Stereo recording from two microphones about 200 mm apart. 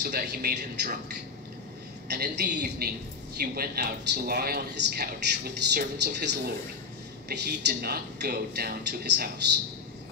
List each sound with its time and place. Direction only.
0.1 s a man's voice: 50° right (ahead or behind)
2.0 s a man's voice: 55° right (ahead or behind)